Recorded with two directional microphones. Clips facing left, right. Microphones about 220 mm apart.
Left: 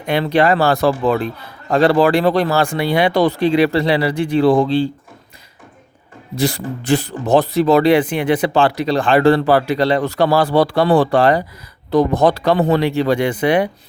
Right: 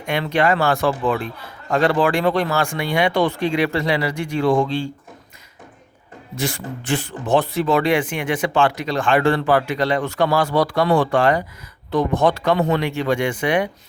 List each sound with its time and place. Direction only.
0.0 s speech: 35° left (ahead or behind)
6.3 s speech: 35° left (ahead or behind)